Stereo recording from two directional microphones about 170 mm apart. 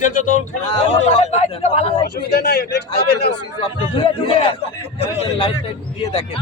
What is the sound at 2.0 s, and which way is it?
Speech, 70° left (ahead or behind).